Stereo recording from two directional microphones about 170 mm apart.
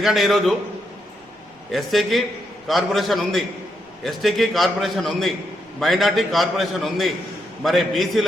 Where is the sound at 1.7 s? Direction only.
Centre (ahead or behind).